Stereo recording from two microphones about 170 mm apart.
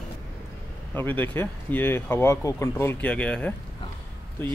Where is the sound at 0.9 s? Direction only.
10° left (ahead or behind).